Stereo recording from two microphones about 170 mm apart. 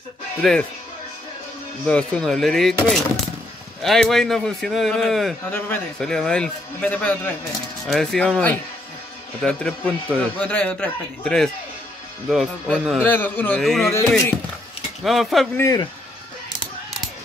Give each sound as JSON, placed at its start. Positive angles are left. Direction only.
{"t": 0.4, "sound": "a man's voice", "side_deg": 5}
{"t": 1.9, "sound": "a man's voice", "side_deg": 5}
{"t": 13.1, "sound": "a man's voice", "side_deg": 10}
{"t": 15.0, "sound": "a man's voice", "side_deg": 0}
{"t": 15.5, "sound": "a man's voice", "side_deg": 15}